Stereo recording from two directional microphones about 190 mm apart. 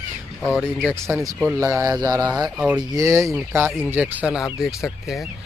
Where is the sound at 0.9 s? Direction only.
15° right (ahead or behind).